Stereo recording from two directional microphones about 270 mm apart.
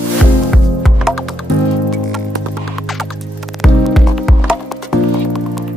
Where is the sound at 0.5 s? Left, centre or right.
Centre.